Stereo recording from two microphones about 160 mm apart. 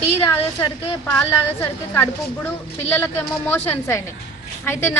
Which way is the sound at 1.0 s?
15° left (ahead or behind).